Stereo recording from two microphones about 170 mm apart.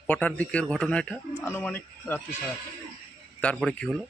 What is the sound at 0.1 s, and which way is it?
Speech, 10° left (ahead or behind).